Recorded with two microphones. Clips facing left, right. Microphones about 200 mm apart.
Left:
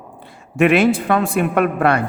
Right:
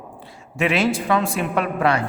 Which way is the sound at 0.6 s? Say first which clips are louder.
Left 6 dB; 55° left (ahead or behind).